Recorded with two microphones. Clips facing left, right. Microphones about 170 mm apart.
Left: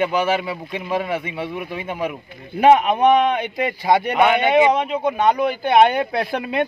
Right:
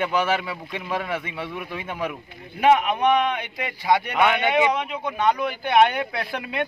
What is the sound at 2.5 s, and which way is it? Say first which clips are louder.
Speech: left 5 dB; 30° left (ahead or behind).